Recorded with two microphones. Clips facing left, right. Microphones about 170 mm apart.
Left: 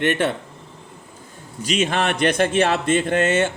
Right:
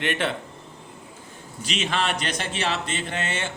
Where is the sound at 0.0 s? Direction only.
50° left (ahead or behind).